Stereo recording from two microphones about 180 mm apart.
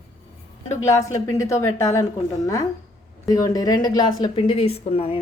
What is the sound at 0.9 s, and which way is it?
A woman's voice, 15° left (ahead or behind).